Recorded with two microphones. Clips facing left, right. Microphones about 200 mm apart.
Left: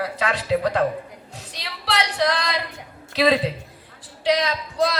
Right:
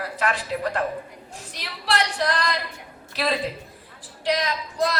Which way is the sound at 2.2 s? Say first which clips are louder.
Left 2 dB; 80° left.